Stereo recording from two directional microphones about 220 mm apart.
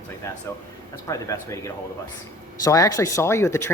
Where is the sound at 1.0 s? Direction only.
15° left (ahead or behind).